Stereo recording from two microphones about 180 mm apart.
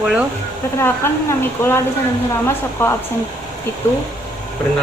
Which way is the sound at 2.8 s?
10° left (ahead or behind).